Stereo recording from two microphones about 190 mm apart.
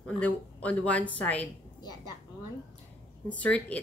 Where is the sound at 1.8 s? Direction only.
20° left (ahead or behind).